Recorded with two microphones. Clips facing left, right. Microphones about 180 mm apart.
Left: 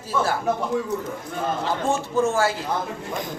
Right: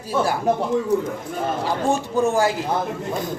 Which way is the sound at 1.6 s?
15° right (ahead or behind).